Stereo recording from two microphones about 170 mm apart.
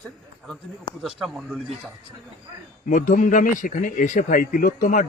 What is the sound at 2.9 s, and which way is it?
Speech, 50° left (ahead or behind).